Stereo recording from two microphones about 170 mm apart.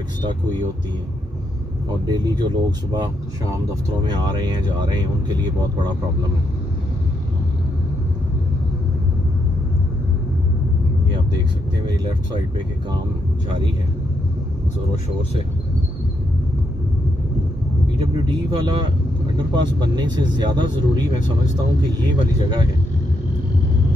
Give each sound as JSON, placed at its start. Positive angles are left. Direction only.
{"t": 2.0, "sound": "speech", "side_deg": -25}
{"t": 17.9, "sound": "speech", "side_deg": -30}